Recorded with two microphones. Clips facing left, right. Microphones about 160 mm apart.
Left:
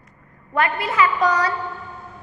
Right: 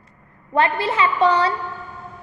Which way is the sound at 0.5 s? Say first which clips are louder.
Right 2 dB; 30° right (ahead or behind).